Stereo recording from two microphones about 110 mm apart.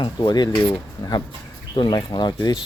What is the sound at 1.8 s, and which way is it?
Speech, 40° left (ahead or behind).